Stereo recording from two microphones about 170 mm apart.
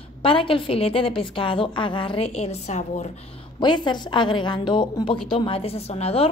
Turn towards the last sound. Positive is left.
turn(degrees=35)  # may be behind; listen again after turning